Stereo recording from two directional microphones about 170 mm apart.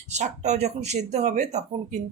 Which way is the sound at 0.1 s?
40° right (ahead or behind).